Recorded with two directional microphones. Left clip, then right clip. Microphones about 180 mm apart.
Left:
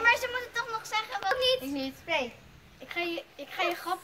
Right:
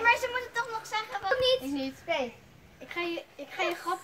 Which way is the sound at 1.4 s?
15° right (ahead or behind).